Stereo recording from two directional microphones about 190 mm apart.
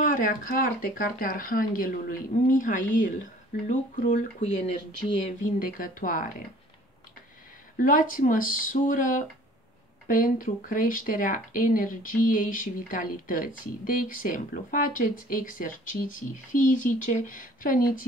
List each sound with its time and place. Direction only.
0.0 s speech: 45° left (ahead or behind)
7.7 s speech: 45° left (ahead or behind)